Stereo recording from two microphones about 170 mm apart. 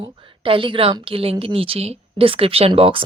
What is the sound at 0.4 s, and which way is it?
Speech, 30° right (ahead or behind).